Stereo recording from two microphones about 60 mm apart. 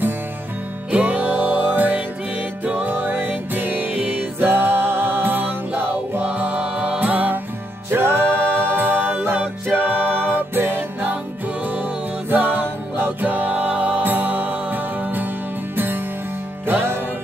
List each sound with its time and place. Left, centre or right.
0.9 s music: right